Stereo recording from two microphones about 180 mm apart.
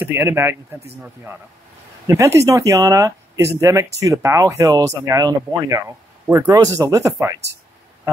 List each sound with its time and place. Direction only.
0.0 s speech: 15° right (ahead or behind)